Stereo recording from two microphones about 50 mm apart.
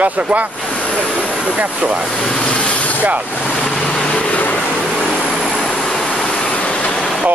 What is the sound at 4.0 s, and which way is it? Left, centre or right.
Vehicle, left.